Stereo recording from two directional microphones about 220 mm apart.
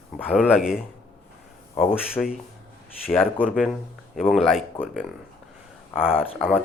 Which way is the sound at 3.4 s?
5° right (ahead or behind).